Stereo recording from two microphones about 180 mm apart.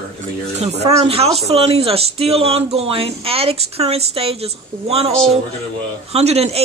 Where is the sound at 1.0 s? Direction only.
35° right (ahead or behind).